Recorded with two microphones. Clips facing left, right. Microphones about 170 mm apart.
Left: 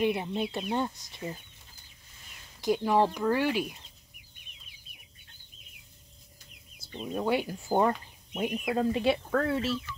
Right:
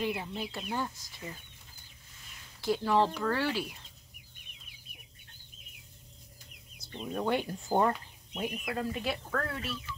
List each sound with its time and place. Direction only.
0.0 s speech: 20° left (ahead or behind)
2.6 s speech: 15° left (ahead or behind)
6.8 s speech: 15° left (ahead or behind)
8.5 s speech: 30° left (ahead or behind)